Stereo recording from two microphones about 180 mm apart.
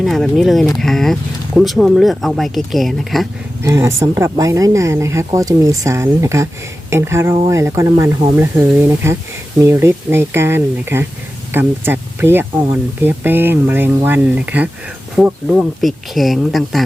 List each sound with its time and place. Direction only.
0.0 s speech: centre (ahead or behind)
3.6 s speech: 15° right (ahead or behind); by 16.8 s centre (ahead or behind)